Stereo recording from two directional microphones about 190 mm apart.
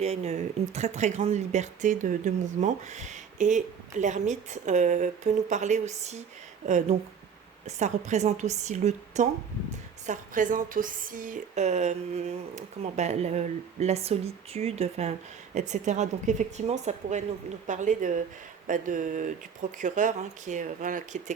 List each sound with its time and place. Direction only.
0.0 s speech: 35° right (ahead or behind)